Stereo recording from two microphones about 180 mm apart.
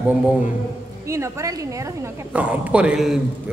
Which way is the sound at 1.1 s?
15° right (ahead or behind).